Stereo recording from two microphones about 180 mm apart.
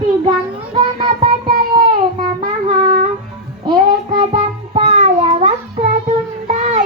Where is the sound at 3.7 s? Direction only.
25° right (ahead or behind).